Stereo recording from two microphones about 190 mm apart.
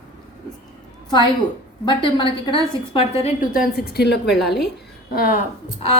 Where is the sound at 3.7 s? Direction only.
55° left (ahead or behind).